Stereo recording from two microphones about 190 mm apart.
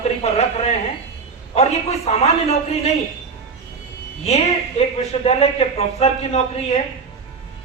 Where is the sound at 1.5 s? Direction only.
35° left (ahead or behind).